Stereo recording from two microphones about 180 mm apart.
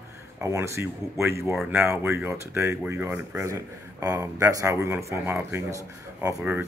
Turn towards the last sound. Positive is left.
turn(degrees=-15)  # may be behind; listen again after turning